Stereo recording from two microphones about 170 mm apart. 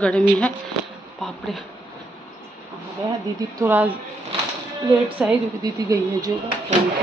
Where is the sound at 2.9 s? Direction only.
20° right (ahead or behind).